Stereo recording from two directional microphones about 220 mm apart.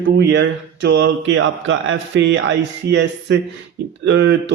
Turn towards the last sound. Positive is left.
turn(degrees=-50)  # may be behind; listen again after turning